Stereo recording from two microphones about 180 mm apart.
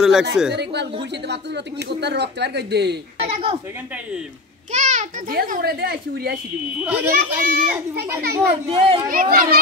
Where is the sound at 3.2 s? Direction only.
30° right (ahead or behind).